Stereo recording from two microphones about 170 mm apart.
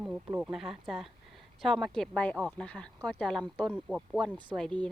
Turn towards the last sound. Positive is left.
turn(degrees=5)  # may be behind; listen again after turning